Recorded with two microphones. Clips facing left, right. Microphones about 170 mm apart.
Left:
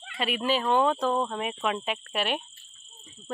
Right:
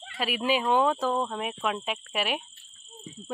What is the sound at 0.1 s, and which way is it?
Speech, centre (ahead or behind).